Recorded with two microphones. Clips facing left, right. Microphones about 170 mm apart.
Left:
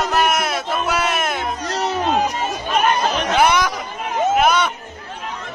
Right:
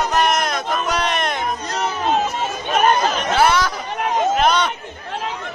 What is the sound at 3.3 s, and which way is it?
Chatter, 15° left (ahead or behind).